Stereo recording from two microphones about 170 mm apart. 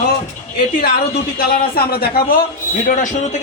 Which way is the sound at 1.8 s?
65° left (ahead or behind).